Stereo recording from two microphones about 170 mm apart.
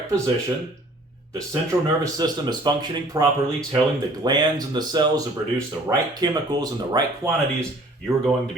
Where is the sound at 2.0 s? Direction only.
25° right (ahead or behind).